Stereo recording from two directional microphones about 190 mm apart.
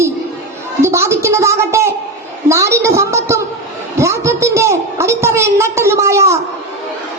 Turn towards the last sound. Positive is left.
turn(degrees=-15)  # may be behind; listen again after turning